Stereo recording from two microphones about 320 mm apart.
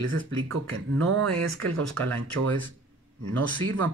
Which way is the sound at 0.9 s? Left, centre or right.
Right.